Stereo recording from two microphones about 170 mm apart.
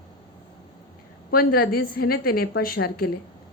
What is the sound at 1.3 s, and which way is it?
A woman's voice, 60° left (ahead or behind).